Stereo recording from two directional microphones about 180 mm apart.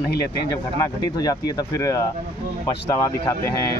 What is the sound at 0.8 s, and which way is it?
Speech, 20° left (ahead or behind).